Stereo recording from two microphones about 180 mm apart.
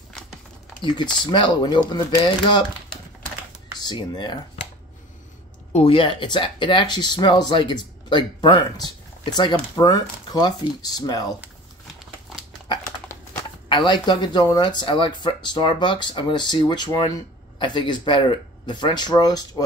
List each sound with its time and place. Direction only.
0.8 s speech: 25° left (ahead or behind)
3.8 s speech: 25° left (ahead or behind)
5.7 s speech: 30° left (ahead or behind)
12.6 s crumpling: 25° left (ahead or behind)
13.7 s speech: 25° left (ahead or behind)